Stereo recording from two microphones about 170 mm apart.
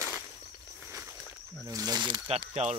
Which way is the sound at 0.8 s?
15° right (ahead or behind).